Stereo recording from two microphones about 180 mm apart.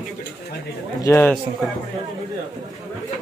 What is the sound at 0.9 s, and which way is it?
Speech, 15° left (ahead or behind).